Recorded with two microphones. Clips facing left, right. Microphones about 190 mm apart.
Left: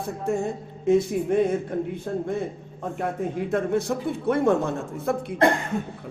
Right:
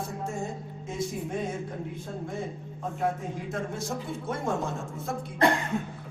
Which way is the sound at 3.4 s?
60° left (ahead or behind).